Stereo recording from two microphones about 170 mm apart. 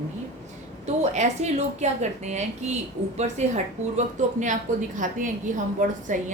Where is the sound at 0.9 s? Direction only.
40° right (ahead or behind).